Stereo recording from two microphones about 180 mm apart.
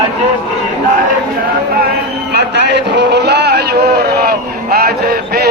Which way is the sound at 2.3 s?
70° right (ahead or behind).